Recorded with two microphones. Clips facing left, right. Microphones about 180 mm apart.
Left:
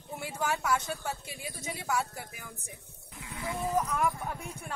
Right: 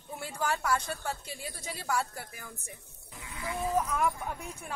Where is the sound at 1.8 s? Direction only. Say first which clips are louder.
Even; centre (ahead or behind).